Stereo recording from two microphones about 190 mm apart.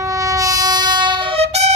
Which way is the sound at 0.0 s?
15° right (ahead or behind).